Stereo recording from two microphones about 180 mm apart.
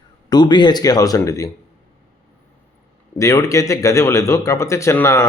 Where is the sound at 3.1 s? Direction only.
15° left (ahead or behind).